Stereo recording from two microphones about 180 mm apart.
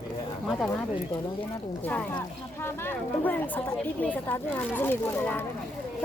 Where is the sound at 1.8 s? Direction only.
10° left (ahead or behind).